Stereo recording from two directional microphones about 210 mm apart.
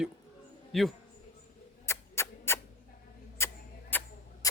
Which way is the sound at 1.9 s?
15° left (ahead or behind).